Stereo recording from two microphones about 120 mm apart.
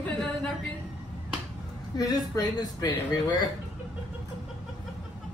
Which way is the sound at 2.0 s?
35° left (ahead or behind).